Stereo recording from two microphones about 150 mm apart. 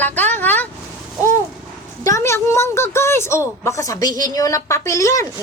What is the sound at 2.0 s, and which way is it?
A woman's voice, 20° left (ahead or behind).